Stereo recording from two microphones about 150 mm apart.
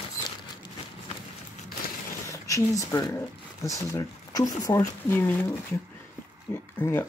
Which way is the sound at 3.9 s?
25° left (ahead or behind).